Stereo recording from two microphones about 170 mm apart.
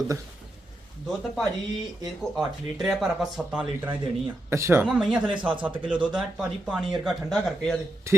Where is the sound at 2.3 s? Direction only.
Centre (ahead or behind).